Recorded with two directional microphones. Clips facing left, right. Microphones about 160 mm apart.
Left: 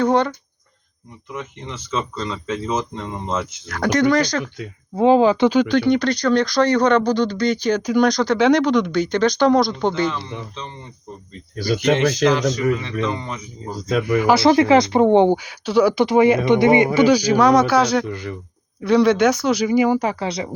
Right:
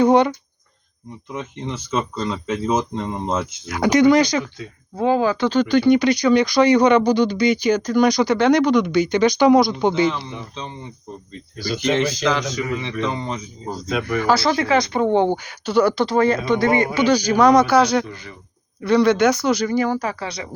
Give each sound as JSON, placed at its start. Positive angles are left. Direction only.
{"t": 0.0, "sound": "speech", "side_deg": -15}
{"t": 1.3, "sound": "speech", "side_deg": -15}
{"t": 4.9, "sound": "speech", "side_deg": 20}
{"t": 5.5, "sound": "speech", "side_deg": 0}
{"t": 7.8, "sound": "speech", "side_deg": 10}
{"t": 8.0, "sound": "speech", "side_deg": -5}
{"t": 11.7, "sound": "speech", "side_deg": 65}
{"t": 12.8, "sound": "speech", "side_deg": -25}
{"t": 14.0, "sound": "speech", "side_deg": 10}
{"t": 14.3, "sound": "speech", "side_deg": 25}
{"t": 15.3, "sound": "speech", "side_deg": 5}
{"t": 16.0, "sound": "speech", "side_deg": 15}
{"t": 17.1, "sound": "speech", "side_deg": 5}